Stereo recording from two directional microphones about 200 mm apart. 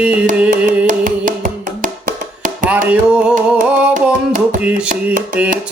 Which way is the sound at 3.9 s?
40° right (ahead or behind).